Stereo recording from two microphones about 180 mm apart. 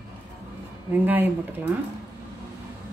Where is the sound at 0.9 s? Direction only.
10° right (ahead or behind).